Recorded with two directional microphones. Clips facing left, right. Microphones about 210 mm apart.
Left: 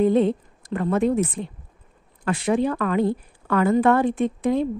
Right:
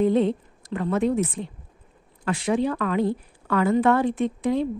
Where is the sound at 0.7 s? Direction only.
50° left (ahead or behind).